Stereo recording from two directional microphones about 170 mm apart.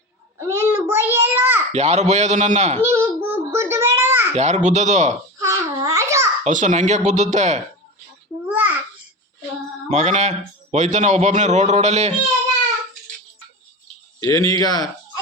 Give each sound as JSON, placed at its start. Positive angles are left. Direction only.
{"t": 0.3, "sound": "child singing", "side_deg": -15}
{"t": 1.7, "sound": "a man's voice", "side_deg": -40}
{"t": 2.9, "sound": "child singing", "side_deg": -15}
{"t": 4.4, "sound": "a man's voice", "side_deg": -40}
{"t": 5.4, "sound": "babbling", "side_deg": -20}
{"t": 6.4, "sound": "a man's voice", "side_deg": -45}
{"t": 8.4, "sound": "babbling", "side_deg": -10}
{"t": 9.9, "sound": "a man's voice", "side_deg": -45}
{"t": 14.2, "sound": "speech", "side_deg": 20}